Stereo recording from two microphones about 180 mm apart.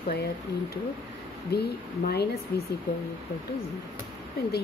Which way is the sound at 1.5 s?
65° left (ahead or behind).